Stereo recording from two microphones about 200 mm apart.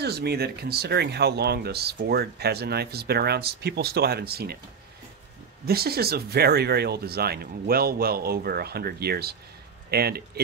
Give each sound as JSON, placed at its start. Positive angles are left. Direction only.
{"t": 0.0, "sound": "speech", "side_deg": -55}
{"t": 5.7, "sound": "speech", "side_deg": -50}